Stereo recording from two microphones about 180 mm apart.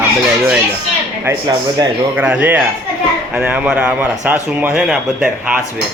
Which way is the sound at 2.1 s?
5° right (ahead or behind).